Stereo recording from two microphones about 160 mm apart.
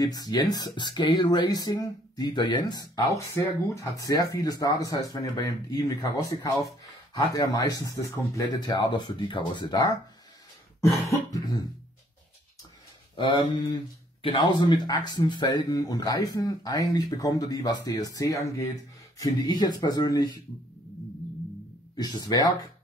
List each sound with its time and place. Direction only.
0.0 s speech: 25° left (ahead or behind)
3.4 s speech: 15° left (ahead or behind)
10.8 s throat clearing: 20° left (ahead or behind)
13.1 s speech: 30° left (ahead or behind)
21.9 s speech: 25° left (ahead or behind)